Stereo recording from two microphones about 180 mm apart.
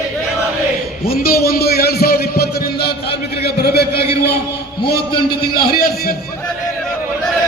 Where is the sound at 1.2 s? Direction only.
55° left (ahead or behind).